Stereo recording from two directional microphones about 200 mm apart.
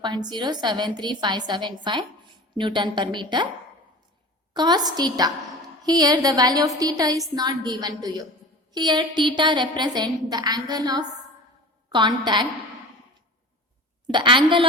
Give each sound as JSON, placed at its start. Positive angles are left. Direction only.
{"t": 0.0, "sound": "a woman's voice", "side_deg": -20}
{"t": 4.5, "sound": "a woman's voice", "side_deg": -20}
{"t": 14.1, "sound": "a woman's voice", "side_deg": -25}